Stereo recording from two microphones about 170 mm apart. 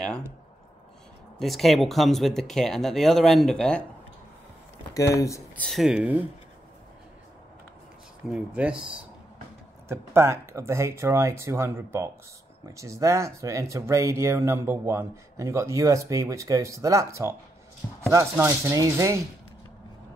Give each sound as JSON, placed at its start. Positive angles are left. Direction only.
{"t": 1.4, "sound": "speech", "side_deg": 0}
{"t": 4.9, "sound": "speech", "side_deg": 20}
{"t": 5.6, "sound": "speech", "side_deg": 0}
{"t": 8.3, "sound": "speech", "side_deg": -5}